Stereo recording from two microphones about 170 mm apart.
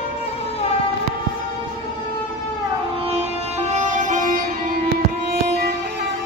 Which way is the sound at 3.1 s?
40° right (ahead or behind).